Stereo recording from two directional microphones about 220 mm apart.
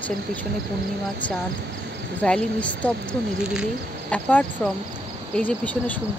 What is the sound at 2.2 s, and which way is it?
Speech, 5° left (ahead or behind).